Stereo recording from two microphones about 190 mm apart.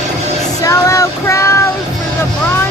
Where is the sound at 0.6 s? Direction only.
15° left (ahead or behind).